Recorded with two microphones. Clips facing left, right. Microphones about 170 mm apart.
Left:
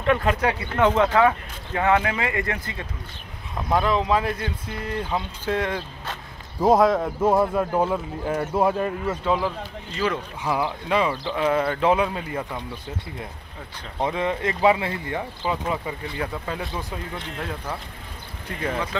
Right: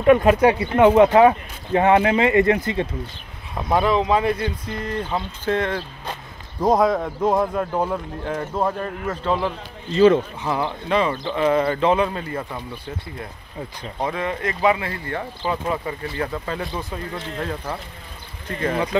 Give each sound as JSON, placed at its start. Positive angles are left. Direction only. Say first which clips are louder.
{"t": 0.0, "sound": "speech", "louder": "right 7 dB", "side_deg": -15}
{"t": 3.5, "sound": "speech", "louder": "right 3 dB", "side_deg": -5}
{"t": 9.9, "sound": "speech", "louder": "right 12 dB", "side_deg": -25}
{"t": 10.4, "sound": "speech", "louder": "right 1 dB", "side_deg": 10}
{"t": 14.0, "sound": "speech", "louder": "left 1 dB", "side_deg": 25}
{"t": 18.5, "sound": "speech", "louder": "right 4 dB", "side_deg": 10}